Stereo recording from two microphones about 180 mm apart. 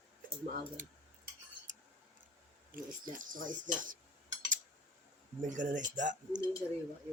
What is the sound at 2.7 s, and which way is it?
Speech, 50° right (ahead or behind).